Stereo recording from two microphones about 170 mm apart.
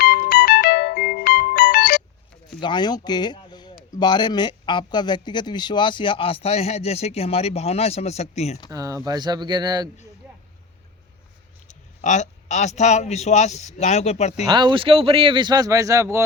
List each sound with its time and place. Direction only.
0.0 s music: 60° left (ahead or behind)
2.6 s speech: 25° left (ahead or behind)
8.7 s a man's voice: 20° right (ahead or behind)
11.7 s speech: 45° left (ahead or behind)
14.4 s a man's voice: 25° right (ahead or behind)